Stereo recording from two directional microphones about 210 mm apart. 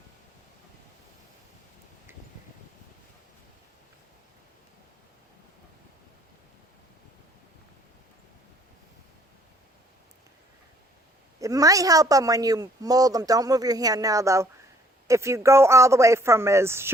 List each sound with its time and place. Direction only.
11.3 s speech: 15° right (ahead or behind)